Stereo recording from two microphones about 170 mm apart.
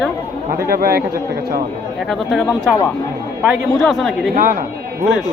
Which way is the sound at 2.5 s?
15° left (ahead or behind).